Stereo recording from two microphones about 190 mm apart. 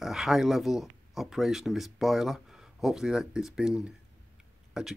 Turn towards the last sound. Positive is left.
turn(degrees=0)  # may be behind; listen again after turning